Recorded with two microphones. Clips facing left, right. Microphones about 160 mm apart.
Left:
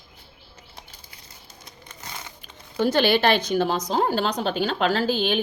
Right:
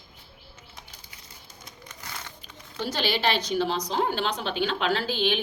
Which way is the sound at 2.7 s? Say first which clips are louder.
Left 8 dB; 55° left (ahead or behind).